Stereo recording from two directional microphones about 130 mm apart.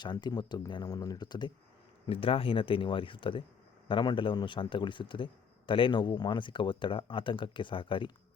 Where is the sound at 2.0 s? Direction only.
45° left (ahead or behind).